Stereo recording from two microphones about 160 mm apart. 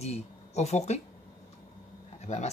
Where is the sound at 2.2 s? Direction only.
45° left (ahead or behind).